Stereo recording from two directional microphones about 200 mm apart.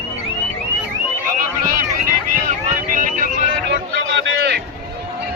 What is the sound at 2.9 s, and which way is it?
Vehicle, 40° right (ahead or behind).